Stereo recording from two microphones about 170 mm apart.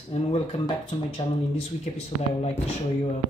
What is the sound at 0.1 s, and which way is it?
Speech, 35° left (ahead or behind).